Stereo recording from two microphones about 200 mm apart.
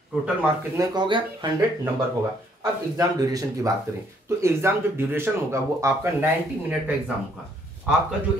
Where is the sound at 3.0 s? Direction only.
15° right (ahead or behind).